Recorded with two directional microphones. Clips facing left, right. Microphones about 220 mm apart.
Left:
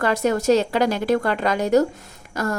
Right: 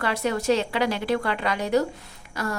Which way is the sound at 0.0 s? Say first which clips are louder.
Left 5 dB; 45° left (ahead or behind).